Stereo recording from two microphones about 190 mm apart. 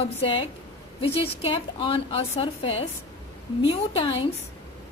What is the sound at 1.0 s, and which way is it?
A woman's voice, 30° left (ahead or behind).